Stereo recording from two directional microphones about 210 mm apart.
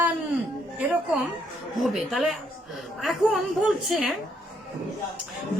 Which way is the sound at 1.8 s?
Centre (ahead or behind).